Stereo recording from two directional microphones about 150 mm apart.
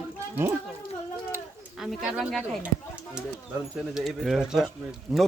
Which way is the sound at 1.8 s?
Centre (ahead or behind).